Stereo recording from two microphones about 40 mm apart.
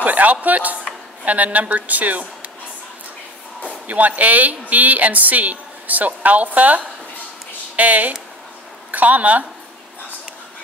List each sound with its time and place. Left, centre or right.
0.0 s a woman's voice: right
3.8 s a woman's voice: right